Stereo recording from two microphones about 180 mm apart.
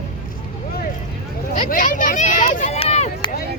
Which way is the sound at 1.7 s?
45° left (ahead or behind).